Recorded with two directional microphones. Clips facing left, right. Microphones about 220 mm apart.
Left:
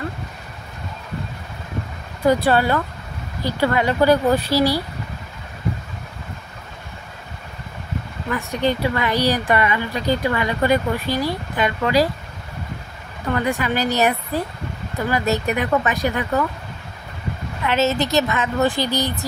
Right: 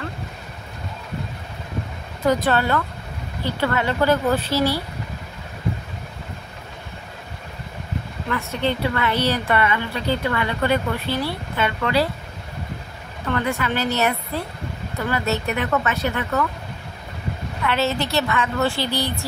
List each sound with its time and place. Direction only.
2.2 s a woman's voice: 10° left (ahead or behind)
8.3 s a woman's voice: 15° left (ahead or behind)
13.3 s a woman's voice: 15° left (ahead or behind)
17.6 s a woman's voice: 20° left (ahead or behind)